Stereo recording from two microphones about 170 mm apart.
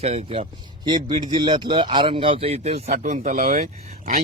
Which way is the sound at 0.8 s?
25° right (ahead or behind).